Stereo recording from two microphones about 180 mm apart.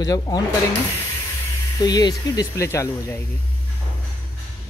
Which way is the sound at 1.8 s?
20° left (ahead or behind).